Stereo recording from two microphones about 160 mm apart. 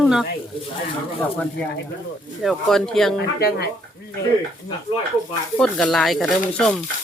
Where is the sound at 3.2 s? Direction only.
80° left.